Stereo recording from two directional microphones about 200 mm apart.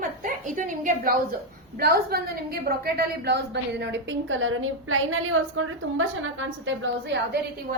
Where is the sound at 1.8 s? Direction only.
50° right (ahead or behind); by 7.2 s 65° right (ahead or behind).